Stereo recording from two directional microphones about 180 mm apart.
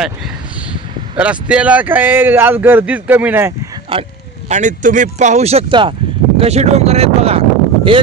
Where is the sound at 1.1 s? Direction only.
5° right (ahead or behind).